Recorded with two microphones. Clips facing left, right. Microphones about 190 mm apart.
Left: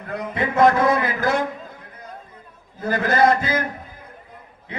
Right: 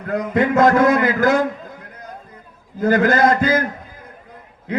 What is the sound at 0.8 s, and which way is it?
Speech, 90° right.